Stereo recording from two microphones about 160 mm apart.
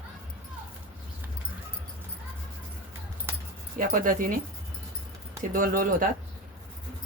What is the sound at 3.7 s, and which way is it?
Speech, 60° right (ahead or behind).